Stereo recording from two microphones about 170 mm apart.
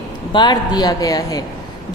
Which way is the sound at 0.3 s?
25° left (ahead or behind).